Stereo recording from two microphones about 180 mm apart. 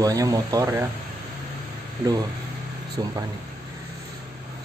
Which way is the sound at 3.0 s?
20° right (ahead or behind).